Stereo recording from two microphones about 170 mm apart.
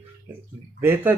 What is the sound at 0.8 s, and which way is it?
Speech, 15° right (ahead or behind).